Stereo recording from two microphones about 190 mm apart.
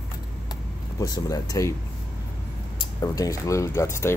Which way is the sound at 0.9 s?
20° left (ahead or behind).